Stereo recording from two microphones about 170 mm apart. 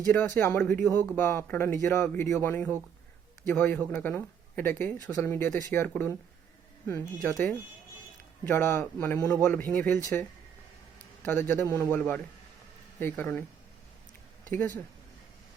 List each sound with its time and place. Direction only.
0.1 s speech: 10° left (ahead or behind)
7.2 s speech: 5° left (ahead or behind)
8.4 s speech: 15° left (ahead or behind)